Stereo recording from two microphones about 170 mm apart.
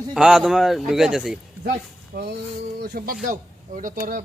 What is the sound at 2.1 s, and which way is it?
Speech, 60° right (ahead or behind).